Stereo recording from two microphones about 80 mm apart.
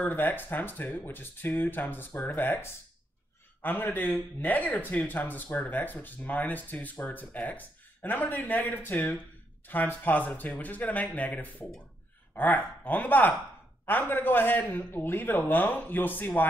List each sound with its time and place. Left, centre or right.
0.0 s a man's voice: left